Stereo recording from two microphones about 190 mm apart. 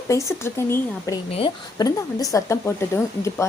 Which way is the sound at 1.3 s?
25° left (ahead or behind).